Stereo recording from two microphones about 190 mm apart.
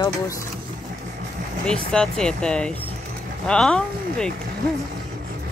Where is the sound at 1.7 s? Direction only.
5° left (ahead or behind).